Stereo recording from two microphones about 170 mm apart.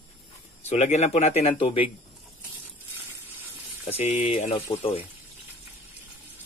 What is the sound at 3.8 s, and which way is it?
Speech, 40° left (ahead or behind).